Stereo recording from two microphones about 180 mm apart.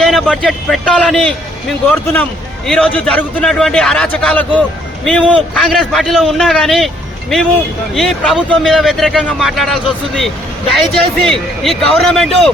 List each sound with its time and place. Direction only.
0.0 s speech: centre (ahead or behind)
2.6 s speech: 5° left (ahead or behind)